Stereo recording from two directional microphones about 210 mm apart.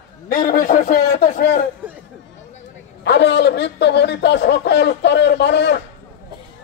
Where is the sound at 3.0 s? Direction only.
55° left (ahead or behind).